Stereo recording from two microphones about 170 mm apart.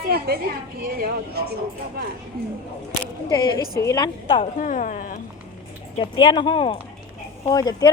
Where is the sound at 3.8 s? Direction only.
20° left (ahead or behind).